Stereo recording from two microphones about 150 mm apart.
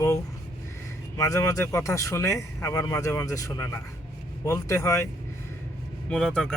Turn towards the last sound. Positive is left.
turn(degrees=5)  # may be behind; listen again after turning